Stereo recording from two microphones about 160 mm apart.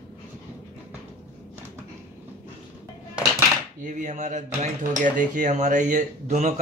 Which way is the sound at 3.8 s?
50° right (ahead or behind).